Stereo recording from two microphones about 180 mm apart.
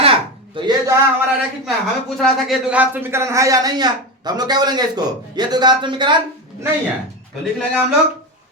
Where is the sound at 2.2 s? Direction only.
Centre (ahead or behind); by 6.2 s 25° right (ahead or behind).